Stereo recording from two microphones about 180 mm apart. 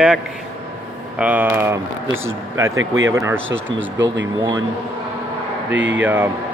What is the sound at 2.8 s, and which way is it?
Speech, 90° right.